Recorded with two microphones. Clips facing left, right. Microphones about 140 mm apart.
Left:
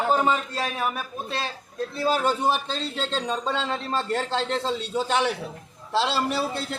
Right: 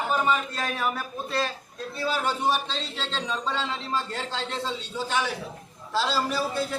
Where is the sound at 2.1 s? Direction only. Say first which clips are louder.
Left 3 dB; 45° left (ahead or behind).